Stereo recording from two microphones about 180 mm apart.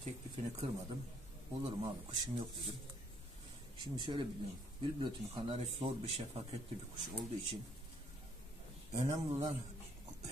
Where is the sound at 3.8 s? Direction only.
25° right (ahead or behind).